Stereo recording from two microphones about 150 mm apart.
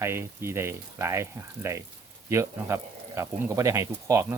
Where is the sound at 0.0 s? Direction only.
15° right (ahead or behind).